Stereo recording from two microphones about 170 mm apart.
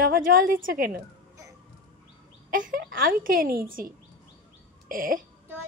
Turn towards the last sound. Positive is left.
turn(degrees=-55)  # may be behind; listen again after turning